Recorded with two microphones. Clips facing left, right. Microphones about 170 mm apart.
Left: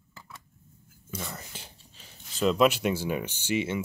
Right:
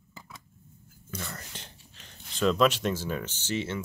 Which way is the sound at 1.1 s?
5° left (ahead or behind).